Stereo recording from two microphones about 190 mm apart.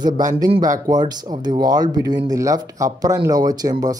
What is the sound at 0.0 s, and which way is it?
Speech, 20° right (ahead or behind).